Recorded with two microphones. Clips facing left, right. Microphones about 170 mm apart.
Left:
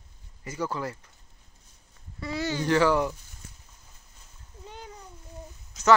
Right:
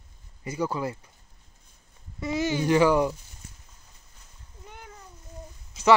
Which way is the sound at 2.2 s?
20° right (ahead or behind).